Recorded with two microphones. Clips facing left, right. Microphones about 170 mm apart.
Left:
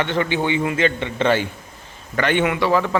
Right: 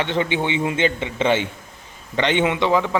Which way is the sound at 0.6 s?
25° right (ahead or behind).